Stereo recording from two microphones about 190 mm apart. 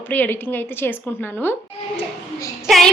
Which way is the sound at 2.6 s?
Centre (ahead or behind).